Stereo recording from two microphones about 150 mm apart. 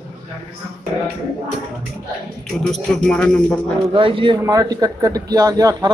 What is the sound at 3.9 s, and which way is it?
Speech, 35° right (ahead or behind).